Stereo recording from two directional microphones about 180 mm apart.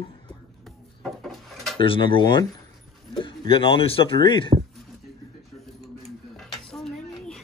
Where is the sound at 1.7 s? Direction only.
30° left (ahead or behind).